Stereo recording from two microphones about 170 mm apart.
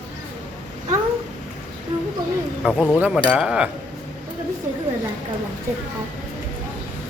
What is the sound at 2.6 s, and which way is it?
A man's voice, 10° right (ahead or behind).